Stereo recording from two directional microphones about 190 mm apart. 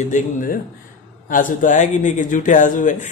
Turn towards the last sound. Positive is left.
turn(degrees=40)  # may be behind; listen again after turning